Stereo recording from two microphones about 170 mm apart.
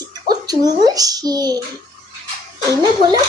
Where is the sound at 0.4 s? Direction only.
20° right (ahead or behind).